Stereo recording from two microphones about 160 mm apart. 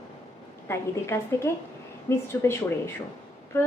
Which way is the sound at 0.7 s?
15° left (ahead or behind).